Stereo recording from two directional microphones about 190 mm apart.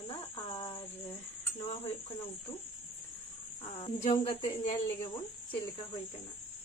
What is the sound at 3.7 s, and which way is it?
Speech, 30° left (ahead or behind).